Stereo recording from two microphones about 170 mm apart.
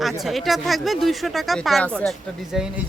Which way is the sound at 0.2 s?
Centre (ahead or behind).